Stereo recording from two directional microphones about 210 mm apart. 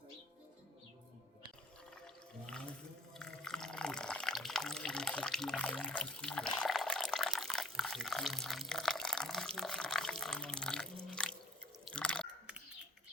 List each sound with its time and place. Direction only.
3.2 s water: 5° left (ahead or behind)
11.9 s drip: 5° left (ahead or behind)